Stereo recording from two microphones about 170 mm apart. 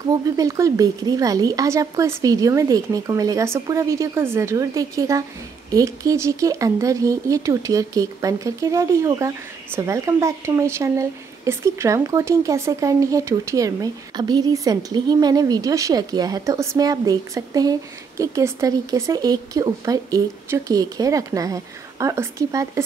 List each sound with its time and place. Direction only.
0.0 s speech: 20° right (ahead or behind)